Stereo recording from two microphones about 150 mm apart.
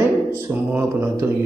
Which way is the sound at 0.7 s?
15° right (ahead or behind).